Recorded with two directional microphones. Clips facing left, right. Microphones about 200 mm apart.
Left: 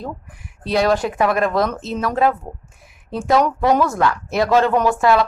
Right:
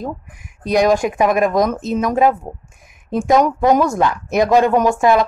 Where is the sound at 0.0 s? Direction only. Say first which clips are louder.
Right 4 dB; 15° right (ahead or behind).